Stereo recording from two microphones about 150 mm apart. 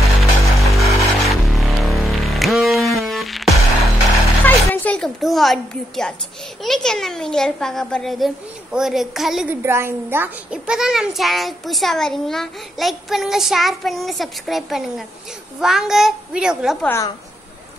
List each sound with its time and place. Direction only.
0.0 s music: centre (ahead or behind)
4.5 s a child's voice: 10° left (ahead or behind)
9.6 s a child's voice: 15° right (ahead or behind)
16.8 s speech: 15° left (ahead or behind)